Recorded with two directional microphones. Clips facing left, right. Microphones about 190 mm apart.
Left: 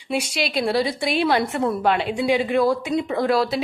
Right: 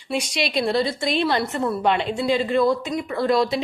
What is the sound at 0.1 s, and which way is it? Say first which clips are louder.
A woman's voice: even; 5° left (ahead or behind).